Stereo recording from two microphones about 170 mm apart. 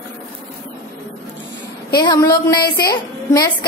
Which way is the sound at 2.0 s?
20° left (ahead or behind).